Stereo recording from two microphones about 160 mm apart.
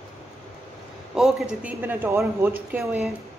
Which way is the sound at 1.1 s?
5° right (ahead or behind).